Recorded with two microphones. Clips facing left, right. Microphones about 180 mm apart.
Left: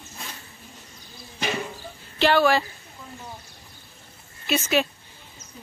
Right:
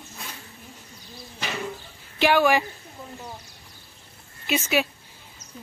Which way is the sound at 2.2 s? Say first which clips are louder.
Even; 15° right (ahead or behind).